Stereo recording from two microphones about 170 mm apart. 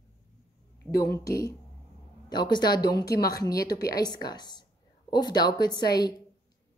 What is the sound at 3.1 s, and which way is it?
Speech, 65° left (ahead or behind).